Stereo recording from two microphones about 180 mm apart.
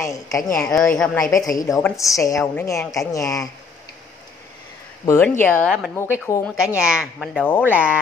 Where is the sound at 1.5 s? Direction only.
20° left (ahead or behind).